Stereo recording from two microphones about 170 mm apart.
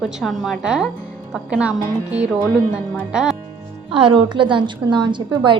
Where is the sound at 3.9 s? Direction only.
30° right (ahead or behind).